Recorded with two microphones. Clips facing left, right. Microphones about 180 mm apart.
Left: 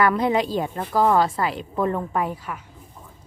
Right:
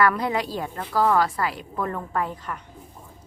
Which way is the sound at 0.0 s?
20° left (ahead or behind).